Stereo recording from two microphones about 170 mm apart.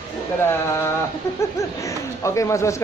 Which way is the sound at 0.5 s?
15° left (ahead or behind).